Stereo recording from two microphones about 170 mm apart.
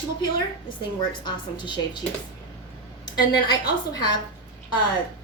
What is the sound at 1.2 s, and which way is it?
Speech, 25° left (ahead or behind).